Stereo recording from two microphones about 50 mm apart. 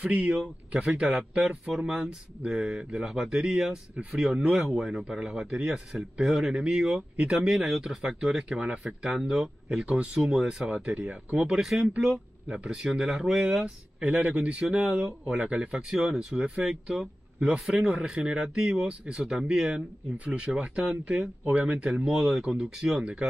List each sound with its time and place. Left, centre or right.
0.0 s speech: right
12.4 s speech: right
12.7 s speech: centre
14.0 s speech: right; by 19.7 s centre
20.2 s speech: right